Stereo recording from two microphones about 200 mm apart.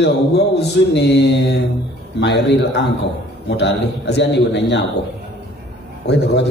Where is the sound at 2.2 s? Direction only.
60° left (ahead or behind).